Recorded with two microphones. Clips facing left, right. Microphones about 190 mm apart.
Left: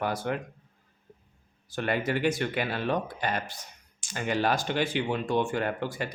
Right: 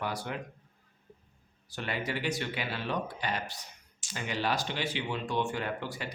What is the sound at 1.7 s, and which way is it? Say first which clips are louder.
Speech: left 7 dB; 50° left (ahead or behind).